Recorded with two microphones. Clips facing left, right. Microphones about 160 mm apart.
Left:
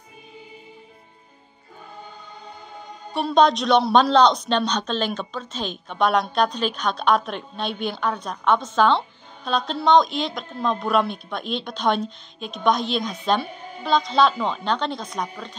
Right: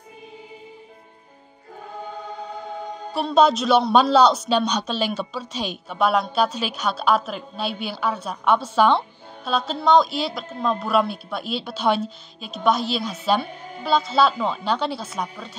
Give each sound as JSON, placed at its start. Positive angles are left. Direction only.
{"t": 3.1, "sound": "speech", "side_deg": 0}